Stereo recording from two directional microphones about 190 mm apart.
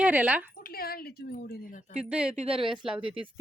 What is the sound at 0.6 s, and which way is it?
Speech, 50° left (ahead or behind).